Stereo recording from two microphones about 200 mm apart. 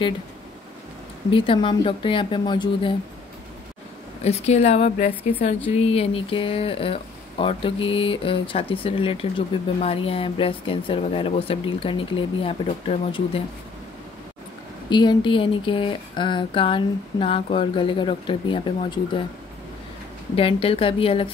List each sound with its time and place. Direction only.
1.3 s speech: 25° left (ahead or behind)
4.2 s a woman's voice: 30° left (ahead or behind)
14.9 s speech: 20° left (ahead or behind)
20.3 s speech: 25° left (ahead or behind)